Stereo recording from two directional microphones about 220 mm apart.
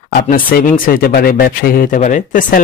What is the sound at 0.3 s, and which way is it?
Speech, 40° left (ahead or behind).